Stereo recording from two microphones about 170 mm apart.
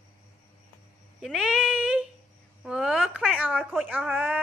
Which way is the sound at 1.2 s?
5° right (ahead or behind).